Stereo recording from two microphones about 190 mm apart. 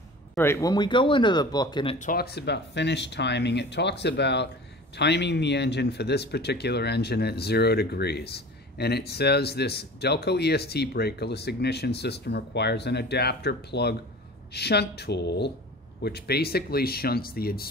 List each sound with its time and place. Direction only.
0.4 s speech: 15° left (ahead or behind)
2.0 s speech: 50° left (ahead or behind)